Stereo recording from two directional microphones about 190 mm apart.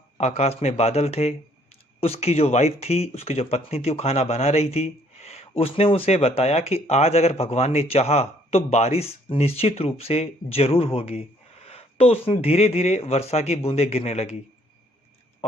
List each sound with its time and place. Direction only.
0.2 s speech: 35° left (ahead or behind)